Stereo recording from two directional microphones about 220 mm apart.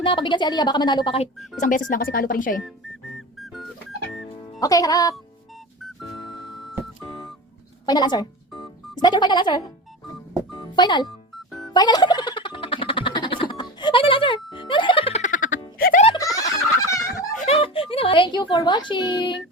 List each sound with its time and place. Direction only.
0.0 s speech: 20° left (ahead or behind)
1.6 s speech: 40° left (ahead or behind)
3.3 s music: centre (ahead or behind)
4.6 s speech: 15° left (ahead or behind)
7.0 s music: centre (ahead or behind)
7.9 s speech: 20° left (ahead or behind)
10.8 s speech: 20° left (ahead or behind)
11.5 s music: 15° left (ahead or behind); by 16.0 s 40° left (ahead or behind)
16.0 s a sound: 15° left (ahead or behind)
17.0 s a sound: 40° left (ahead or behind); by 19.4 s 20° left (ahead or behind)